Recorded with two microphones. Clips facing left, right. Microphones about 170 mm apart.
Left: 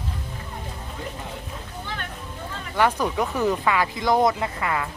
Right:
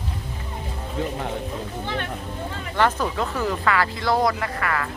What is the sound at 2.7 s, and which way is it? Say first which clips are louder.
Speech: even; 10° left (ahead or behind).